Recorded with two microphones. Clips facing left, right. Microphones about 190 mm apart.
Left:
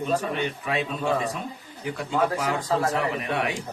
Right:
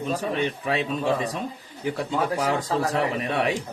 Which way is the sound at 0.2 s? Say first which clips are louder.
Right 2 dB; 35° right (ahead or behind).